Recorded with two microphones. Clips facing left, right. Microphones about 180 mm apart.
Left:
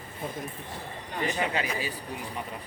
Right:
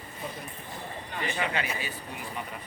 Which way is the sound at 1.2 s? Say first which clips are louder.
Left 2 dB; 40° left (ahead or behind).